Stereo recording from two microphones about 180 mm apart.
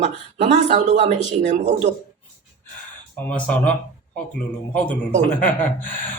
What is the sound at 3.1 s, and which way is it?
Speech, 10° left (ahead or behind).